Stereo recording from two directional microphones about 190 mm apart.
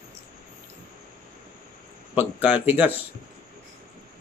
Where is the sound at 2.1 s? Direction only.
5° right (ahead or behind).